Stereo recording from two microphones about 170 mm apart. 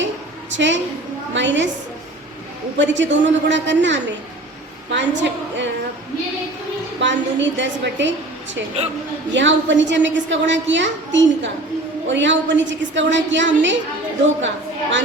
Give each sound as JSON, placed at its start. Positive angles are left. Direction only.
{"t": 0.5, "sound": "a woman's voice", "side_deg": -90}
{"t": 2.7, "sound": "a woman's voice", "side_deg": -90}
{"t": 7.0, "sound": "a woman's voice", "side_deg": -90}
{"t": 9.3, "sound": "a woman's voice", "side_deg": -90}